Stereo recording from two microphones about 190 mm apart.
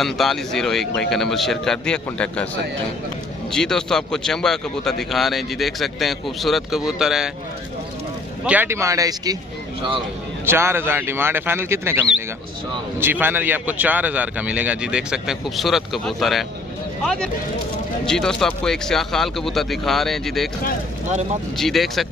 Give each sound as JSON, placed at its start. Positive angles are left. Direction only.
{"t": 0.0, "sound": "speech", "side_deg": 0}
{"t": 3.5, "sound": "speech", "side_deg": 5}
{"t": 8.5, "sound": "a man's voice", "side_deg": -10}
{"t": 10.4, "sound": "a man's voice", "side_deg": -15}
{"t": 21.5, "sound": "speech", "side_deg": 0}